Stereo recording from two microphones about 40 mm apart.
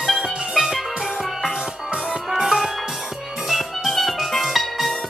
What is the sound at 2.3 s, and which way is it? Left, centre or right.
Music, centre.